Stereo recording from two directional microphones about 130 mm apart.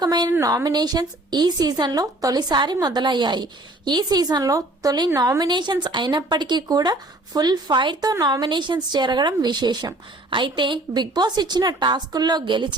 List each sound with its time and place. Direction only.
0.0 s a woman's voice: 30° right (ahead or behind)